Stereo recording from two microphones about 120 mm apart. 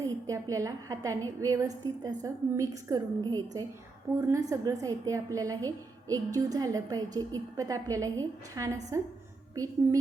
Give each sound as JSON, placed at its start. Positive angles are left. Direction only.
{"t": 0.0, "sound": "a woman's voice", "side_deg": -25}